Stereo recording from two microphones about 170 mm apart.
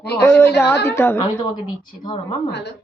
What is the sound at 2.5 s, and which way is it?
Speech, 80° left.